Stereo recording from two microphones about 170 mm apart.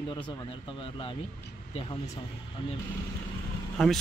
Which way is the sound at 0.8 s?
30° left (ahead or behind).